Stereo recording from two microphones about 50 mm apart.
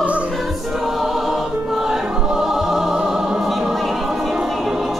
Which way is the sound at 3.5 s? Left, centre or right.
Centre.